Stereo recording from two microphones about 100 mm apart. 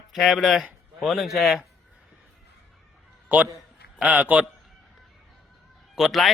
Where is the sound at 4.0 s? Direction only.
15° right (ahead or behind).